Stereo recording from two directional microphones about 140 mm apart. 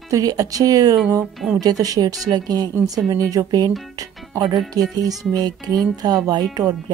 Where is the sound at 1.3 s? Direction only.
Centre (ahead or behind).